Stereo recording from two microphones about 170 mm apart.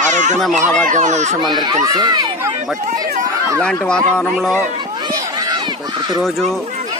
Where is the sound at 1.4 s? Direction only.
25° right (ahead or behind).